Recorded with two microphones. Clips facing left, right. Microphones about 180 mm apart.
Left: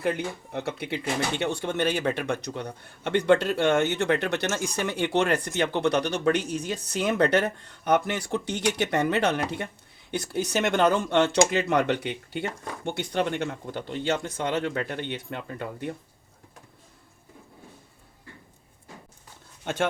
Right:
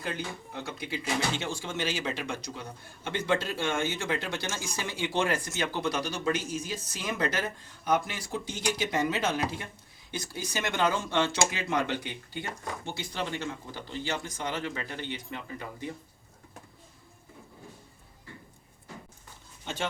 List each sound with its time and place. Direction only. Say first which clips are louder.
0.0 s speech: left 8 dB; 65° left (ahead or behind)
19.6 s speech: left 7 dB; 55° left (ahead or behind)